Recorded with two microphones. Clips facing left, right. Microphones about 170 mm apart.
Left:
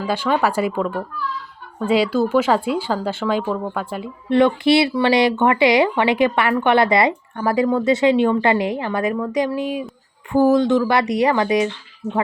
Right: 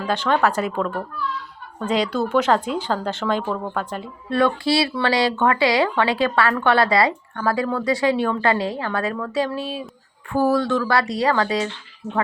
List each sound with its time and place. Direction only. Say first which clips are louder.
0.0 s speech: left 1 dB; 10° left (ahead or behind)
4.3 s speech: left 5 dB; 20° left (ahead or behind)